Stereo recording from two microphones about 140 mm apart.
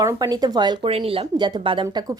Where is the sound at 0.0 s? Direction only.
25° right (ahead or behind).